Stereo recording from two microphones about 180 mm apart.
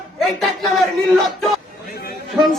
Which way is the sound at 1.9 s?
55° left (ahead or behind).